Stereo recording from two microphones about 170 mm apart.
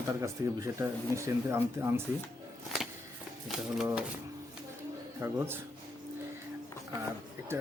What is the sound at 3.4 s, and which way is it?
Speech, centre (ahead or behind).